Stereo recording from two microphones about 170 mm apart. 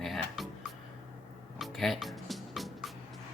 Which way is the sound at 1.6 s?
Centre (ahead or behind).